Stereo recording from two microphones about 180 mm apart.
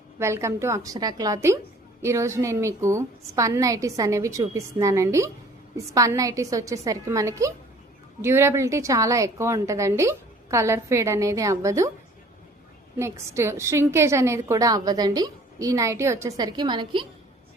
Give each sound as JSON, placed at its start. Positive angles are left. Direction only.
{"t": 0.2, "sound": "a woman's voice", "side_deg": -15}
{"t": 13.0, "sound": "a woman's voice", "side_deg": -15}